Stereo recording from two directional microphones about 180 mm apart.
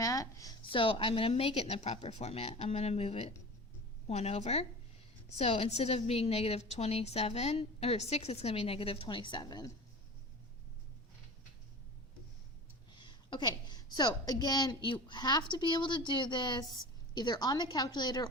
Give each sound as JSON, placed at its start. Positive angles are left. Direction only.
{"t": 0.0, "sound": "a woman's voice", "side_deg": 20}
{"t": 13.0, "sound": "a woman's voice", "side_deg": 25}